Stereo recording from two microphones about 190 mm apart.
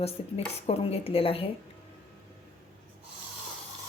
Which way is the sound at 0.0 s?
30° left (ahead or behind).